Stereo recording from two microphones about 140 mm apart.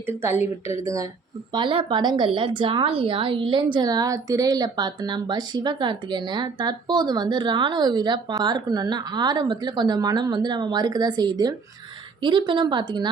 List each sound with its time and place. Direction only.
0.0 s speech: 20° right (ahead or behind)
1.5 s a woman's voice: 35° right (ahead or behind)